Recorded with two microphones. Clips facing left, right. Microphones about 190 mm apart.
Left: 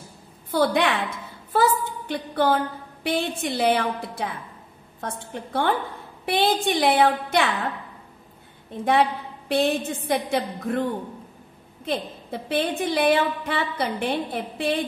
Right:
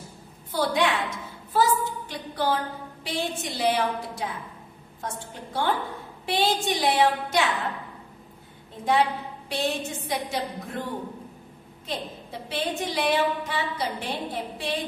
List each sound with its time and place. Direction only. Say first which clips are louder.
0.5 s a woman's voice: left 3 dB; 60° left (ahead or behind)
9.5 s a woman's voice: left 6 dB; 55° left (ahead or behind)
11.8 s a woman's voice: left 6 dB; 55° left (ahead or behind)